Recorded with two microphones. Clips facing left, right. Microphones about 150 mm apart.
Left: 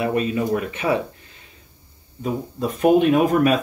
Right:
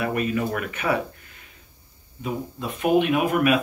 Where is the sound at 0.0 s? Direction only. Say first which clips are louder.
Left 3 dB; 25° left (ahead or behind).